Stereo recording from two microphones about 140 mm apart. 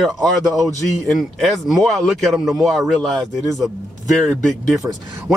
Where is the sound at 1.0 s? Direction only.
Centre (ahead or behind).